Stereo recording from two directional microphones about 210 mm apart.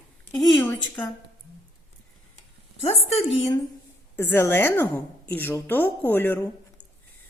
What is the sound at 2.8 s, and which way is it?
Speech, 30° left (ahead or behind).